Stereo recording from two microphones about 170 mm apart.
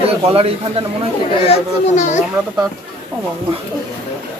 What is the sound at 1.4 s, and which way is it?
Speech, 45° left (ahead or behind).